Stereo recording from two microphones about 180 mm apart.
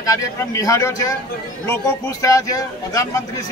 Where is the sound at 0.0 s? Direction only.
20° left (ahead or behind).